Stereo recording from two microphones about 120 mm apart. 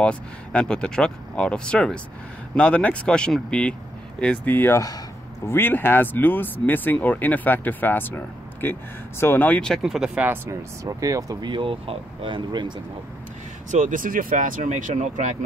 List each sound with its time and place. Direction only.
0.0 s speech: 10° left (ahead or behind); by 5.0 s 30° left (ahead or behind)
5.5 s speech: 15° left (ahead or behind)
9.8 s speech: 5° right (ahead or behind); by 11.5 s 30° right (ahead or behind)
11.5 s speech: 45° right (ahead or behind)
13.7 s speech: 90° right